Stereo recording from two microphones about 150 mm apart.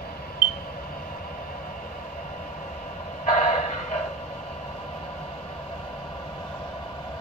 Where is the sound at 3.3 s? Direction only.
55° left (ahead or behind).